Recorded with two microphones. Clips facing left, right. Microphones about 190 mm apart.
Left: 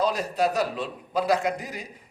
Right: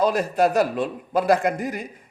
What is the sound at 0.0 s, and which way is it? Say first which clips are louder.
A man's voice: right 5 dB; 55° right (ahead or behind).